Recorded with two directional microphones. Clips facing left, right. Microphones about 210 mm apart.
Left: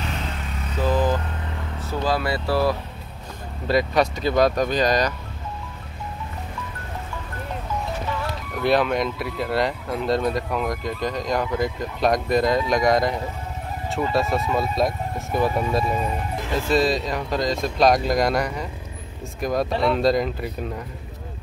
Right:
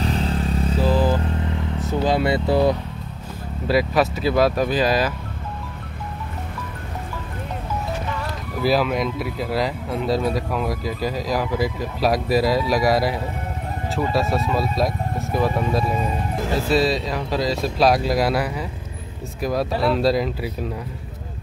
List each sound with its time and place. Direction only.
0.0 s motorcycle: 35° right (ahead or behind)
2.0 s speech: 20° right (ahead or behind)
3.6 s speech: 5° right (ahead or behind)
8.5 s speech: centre (ahead or behind)